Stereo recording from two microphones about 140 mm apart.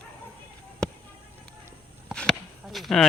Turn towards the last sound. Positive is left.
turn(degrees=0)  # may be behind; listen again after turning